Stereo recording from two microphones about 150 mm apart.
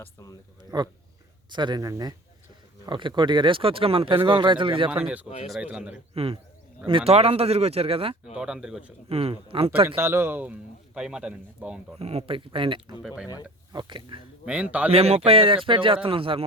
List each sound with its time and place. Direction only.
0.0 s speech: 20° left (ahead or behind)
0.7 s speech: 25° right (ahead or behind)
5.5 s speech: 5° right (ahead or behind)
6.1 s speech: 40° right (ahead or behind)
8.4 s speech: 5° right (ahead or behind)
9.0 s speech: 40° right (ahead or behind)
9.8 s speech: 15° right (ahead or behind)
11.9 s speech: 45° right (ahead or behind)
13.0 s speech: 5° right (ahead or behind)
13.7 s speech: 30° right (ahead or behind)
14.4 s speech: 10° right (ahead or behind)
14.9 s speech: 40° right (ahead or behind)